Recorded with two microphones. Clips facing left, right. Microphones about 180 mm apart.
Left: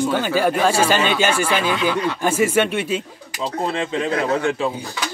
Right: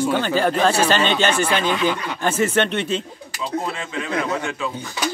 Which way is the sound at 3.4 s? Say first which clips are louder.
Left 3 dB; 35° left (ahead or behind).